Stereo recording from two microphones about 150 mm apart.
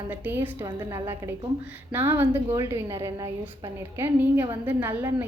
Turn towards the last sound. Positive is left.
turn(degrees=-15)  # may be behind; listen again after turning